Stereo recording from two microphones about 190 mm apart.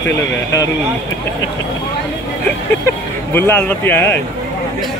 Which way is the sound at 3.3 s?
10° left (ahead or behind).